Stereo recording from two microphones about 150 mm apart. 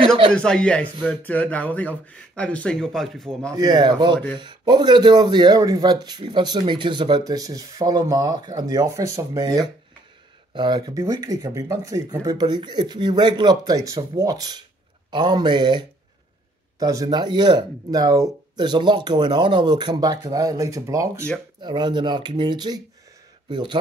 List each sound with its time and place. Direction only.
0.3 s speech: 5° left (ahead or behind)
3.5 s speech: 30° right (ahead or behind)